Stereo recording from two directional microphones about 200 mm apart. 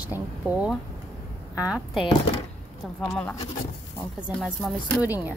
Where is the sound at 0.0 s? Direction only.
5° right (ahead or behind).